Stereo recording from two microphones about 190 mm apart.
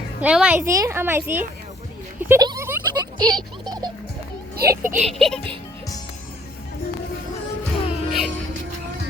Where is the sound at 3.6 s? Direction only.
20° right (ahead or behind).